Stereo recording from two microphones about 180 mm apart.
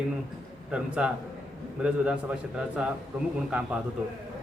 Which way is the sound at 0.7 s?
5° right (ahead or behind).